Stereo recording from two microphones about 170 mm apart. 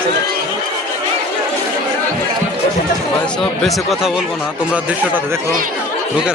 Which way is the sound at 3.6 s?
Centre (ahead or behind).